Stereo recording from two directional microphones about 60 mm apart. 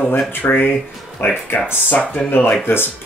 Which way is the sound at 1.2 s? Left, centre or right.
Left.